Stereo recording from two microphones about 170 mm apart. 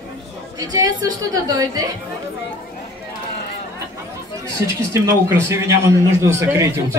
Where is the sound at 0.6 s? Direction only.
20° right (ahead or behind).